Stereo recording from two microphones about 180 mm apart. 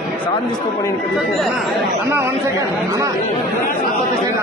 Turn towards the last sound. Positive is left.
turn(degrees=-15)  # may be behind; listen again after turning